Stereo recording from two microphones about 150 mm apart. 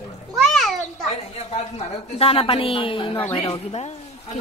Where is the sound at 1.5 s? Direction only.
40° left (ahead or behind).